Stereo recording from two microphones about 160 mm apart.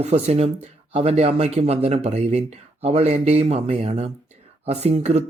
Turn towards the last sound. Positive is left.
turn(degrees=-40)  # may be behind; listen again after turning